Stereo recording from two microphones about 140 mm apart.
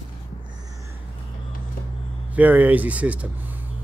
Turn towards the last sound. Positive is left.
turn(degrees=-10)  # may be behind; listen again after turning